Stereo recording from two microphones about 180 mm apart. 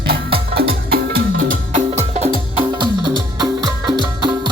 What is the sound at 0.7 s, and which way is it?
Music, 50° right (ahead or behind).